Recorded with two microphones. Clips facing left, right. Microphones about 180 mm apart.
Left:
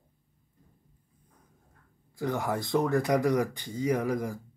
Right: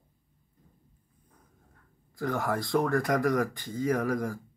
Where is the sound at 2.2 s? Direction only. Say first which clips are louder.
Even; 20° left (ahead or behind).